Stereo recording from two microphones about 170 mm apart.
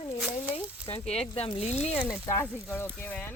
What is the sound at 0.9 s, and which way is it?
Speech, 35° left (ahead or behind).